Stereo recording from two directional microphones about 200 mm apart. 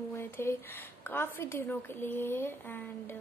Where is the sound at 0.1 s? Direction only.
10° left (ahead or behind).